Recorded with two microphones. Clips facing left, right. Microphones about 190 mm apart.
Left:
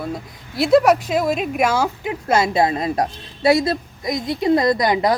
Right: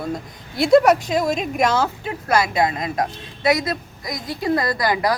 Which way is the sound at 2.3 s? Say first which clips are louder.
Left 2 dB; 25° left (ahead or behind).